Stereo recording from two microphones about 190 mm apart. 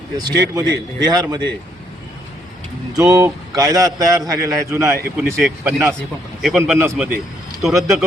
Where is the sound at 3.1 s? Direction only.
20° right (ahead or behind).